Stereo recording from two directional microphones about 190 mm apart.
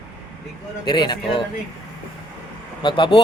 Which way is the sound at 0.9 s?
25° left (ahead or behind).